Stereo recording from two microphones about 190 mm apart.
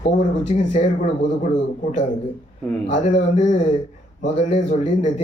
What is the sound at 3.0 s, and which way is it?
Speech, 35° left (ahead or behind).